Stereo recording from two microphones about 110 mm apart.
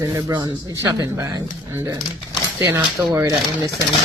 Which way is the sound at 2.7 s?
35° right (ahead or behind).